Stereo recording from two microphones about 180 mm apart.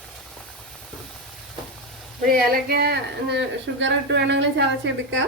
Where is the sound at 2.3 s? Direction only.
60° right (ahead or behind); by 5.2 s 85° right.